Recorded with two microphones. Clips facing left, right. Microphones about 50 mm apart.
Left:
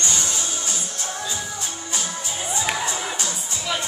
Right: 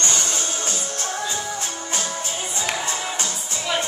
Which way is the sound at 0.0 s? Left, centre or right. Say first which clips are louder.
Right 1 dB; right.